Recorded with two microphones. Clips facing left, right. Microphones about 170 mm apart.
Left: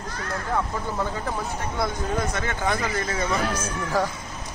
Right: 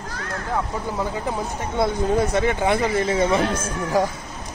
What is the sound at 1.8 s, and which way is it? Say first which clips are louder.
Speech: right 7 dB; 25° right (ahead or behind).